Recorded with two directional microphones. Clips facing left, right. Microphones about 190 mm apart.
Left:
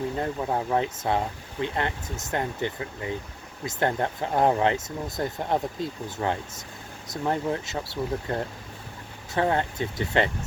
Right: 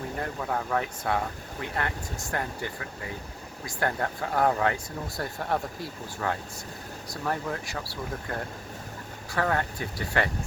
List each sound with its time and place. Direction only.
0.2 s speech: 20° left (ahead or behind)